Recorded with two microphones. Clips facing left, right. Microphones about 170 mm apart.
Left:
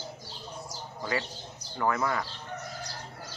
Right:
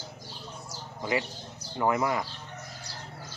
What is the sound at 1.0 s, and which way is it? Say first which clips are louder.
Speech: right 3 dB; 20° right (ahead or behind).